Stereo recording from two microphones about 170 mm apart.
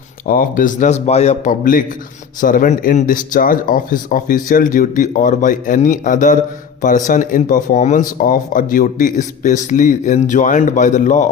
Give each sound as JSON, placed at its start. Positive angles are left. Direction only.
{"t": 0.3, "sound": "speech", "side_deg": 55}